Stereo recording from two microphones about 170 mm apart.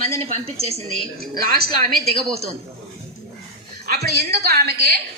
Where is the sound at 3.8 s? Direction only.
65° right (ahead or behind).